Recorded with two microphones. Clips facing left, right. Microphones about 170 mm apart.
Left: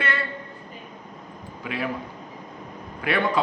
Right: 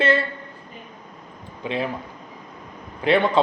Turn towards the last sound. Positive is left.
turn(degrees=-25)  # may be behind; listen again after turning